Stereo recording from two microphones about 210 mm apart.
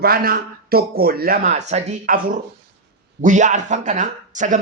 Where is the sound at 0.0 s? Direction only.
45° right (ahead or behind).